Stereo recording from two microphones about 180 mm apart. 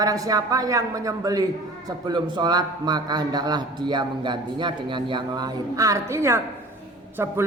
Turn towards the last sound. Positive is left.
turn(degrees=-15)  # may be behind; listen again after turning